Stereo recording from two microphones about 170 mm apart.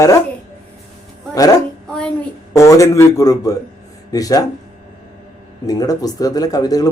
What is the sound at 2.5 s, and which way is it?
A man's voice, 20° left (ahead or behind).